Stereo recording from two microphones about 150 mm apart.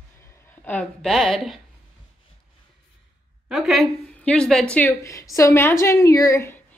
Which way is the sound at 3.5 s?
Centre (ahead or behind).